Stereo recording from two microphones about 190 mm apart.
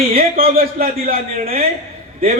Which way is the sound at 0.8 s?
50° right (ahead or behind).